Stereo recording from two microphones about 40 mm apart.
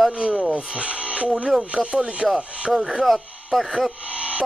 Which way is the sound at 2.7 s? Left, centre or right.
Centre.